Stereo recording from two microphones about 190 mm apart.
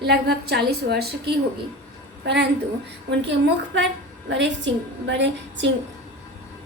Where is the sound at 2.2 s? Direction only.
60° right (ahead or behind).